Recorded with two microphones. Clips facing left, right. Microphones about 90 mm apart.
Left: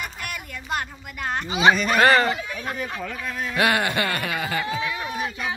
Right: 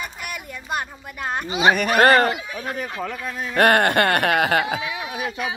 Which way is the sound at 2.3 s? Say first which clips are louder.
Right 1 dB; 10° right (ahead or behind).